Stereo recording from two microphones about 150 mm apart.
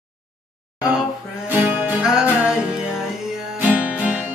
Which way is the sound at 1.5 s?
10° right (ahead or behind).